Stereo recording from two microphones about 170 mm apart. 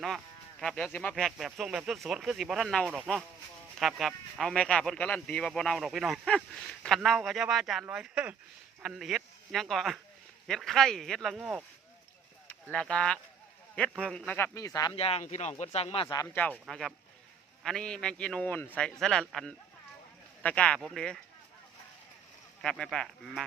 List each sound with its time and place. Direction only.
0.6 s speech: 5° left (ahead or behind)
12.7 s speech: 5° left (ahead or behind)
14.9 s speech: 35° left (ahead or behind)
16.2 s speech: 10° left (ahead or behind)
22.6 s speech: 5° left (ahead or behind)